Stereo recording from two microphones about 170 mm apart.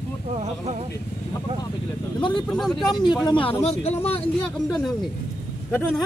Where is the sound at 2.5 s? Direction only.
Centre (ahead or behind).